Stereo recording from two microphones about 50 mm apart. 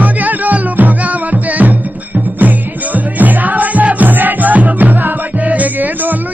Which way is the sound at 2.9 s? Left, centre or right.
Right.